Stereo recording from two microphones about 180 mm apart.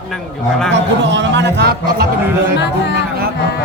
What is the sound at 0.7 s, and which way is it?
Speech, 80° right.